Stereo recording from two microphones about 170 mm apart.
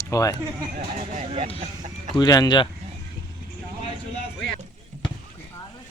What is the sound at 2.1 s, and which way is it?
Speech, 25° left (ahead or behind).